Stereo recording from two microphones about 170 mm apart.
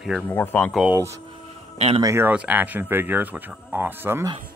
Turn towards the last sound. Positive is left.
turn(degrees=-15)  # may be behind; listen again after turning